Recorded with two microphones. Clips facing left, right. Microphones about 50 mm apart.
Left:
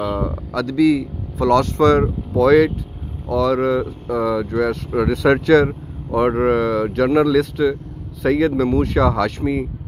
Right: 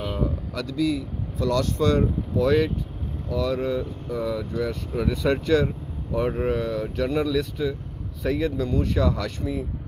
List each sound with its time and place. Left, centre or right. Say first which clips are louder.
0.6 s speech: left 10 dB; left
1.4 s speech: left 8 dB; left
1.9 s speech: left 7 dB; left
7.2 s speech: left 9 dB; left
8.2 s speech: left 8 dB; left
8.6 s speech: left 7 dB; left